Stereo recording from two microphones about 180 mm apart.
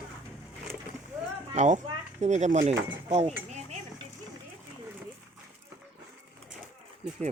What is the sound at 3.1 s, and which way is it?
Cutlery, 35° right (ahead or behind).